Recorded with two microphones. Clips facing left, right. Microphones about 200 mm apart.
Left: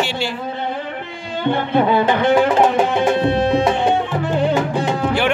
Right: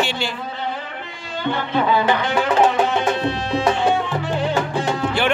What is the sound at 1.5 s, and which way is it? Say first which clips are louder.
Speech: left 3 dB; 55° left (ahead or behind).